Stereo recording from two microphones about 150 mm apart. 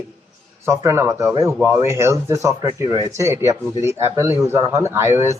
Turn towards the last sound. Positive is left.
turn(degrees=-15)  # may be behind; listen again after turning